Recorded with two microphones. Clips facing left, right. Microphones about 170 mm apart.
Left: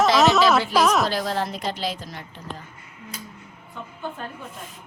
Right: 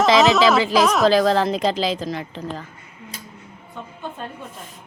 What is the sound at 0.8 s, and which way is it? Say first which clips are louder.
Speech: right 2 dB; centre (ahead or behind).